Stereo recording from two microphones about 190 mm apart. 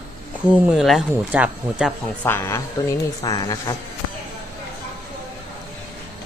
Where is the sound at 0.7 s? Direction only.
5° right (ahead or behind).